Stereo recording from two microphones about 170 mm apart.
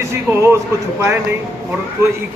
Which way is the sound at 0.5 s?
15° right (ahead or behind).